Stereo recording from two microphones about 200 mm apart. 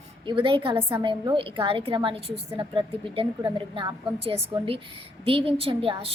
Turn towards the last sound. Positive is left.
turn(degrees=-30)  # may be behind; listen again after turning